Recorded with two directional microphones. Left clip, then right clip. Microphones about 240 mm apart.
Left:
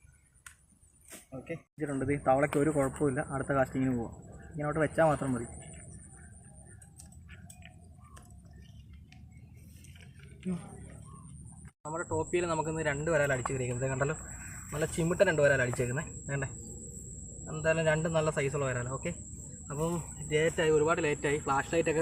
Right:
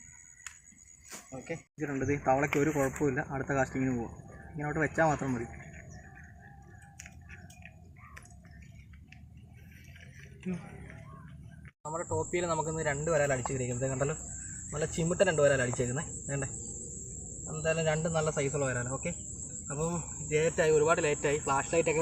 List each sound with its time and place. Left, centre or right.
1.5 s speech: centre
11.8 s speech: centre
17.5 s speech: centre
19.6 s cricket: centre
20.4 s speech: centre